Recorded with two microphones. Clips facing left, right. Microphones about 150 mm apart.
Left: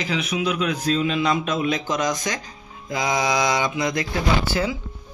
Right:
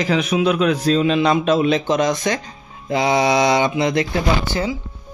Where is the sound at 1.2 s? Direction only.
30° right (ahead or behind).